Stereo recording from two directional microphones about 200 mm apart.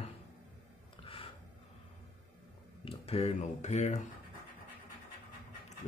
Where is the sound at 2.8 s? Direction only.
30° left (ahead or behind).